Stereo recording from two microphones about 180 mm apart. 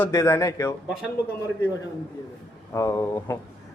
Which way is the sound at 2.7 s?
15° left (ahead or behind).